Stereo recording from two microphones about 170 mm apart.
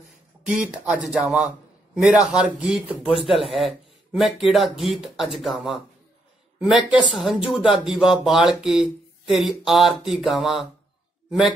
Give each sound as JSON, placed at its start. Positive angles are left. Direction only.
{"t": 0.6, "sound": "speech", "side_deg": -5}
{"t": 6.9, "sound": "speech", "side_deg": -5}